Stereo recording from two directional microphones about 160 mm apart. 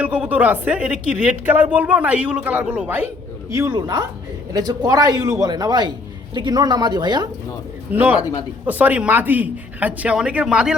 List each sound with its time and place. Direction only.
0.0 s speech: 10° right (ahead or behind); by 7.3 s 25° right (ahead or behind)
7.9 s speech: 10° right (ahead or behind)